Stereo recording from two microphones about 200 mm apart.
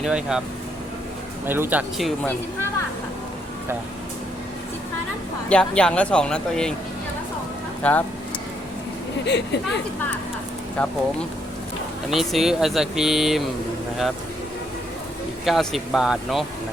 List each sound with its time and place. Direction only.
0.0 s speech: 5° right (ahead or behind)
1.5 s speech: 10° right (ahead or behind)
5.5 s speech: 5° left (ahead or behind)
7.8 s speech: 5° left (ahead or behind)
9.2 s speech: 60° left (ahead or behind)
10.8 s speech: 5° left (ahead or behind)
12.1 s speech: centre (ahead or behind)
15.4 s speech: centre (ahead or behind)